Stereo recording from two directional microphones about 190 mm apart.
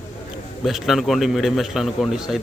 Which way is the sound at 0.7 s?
Centre (ahead or behind).